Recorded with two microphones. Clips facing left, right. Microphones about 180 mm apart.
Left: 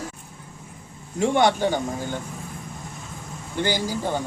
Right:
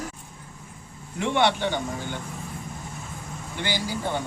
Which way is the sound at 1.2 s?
45° left (ahead or behind).